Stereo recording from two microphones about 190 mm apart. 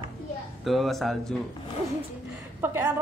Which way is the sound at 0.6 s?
Centre (ahead or behind).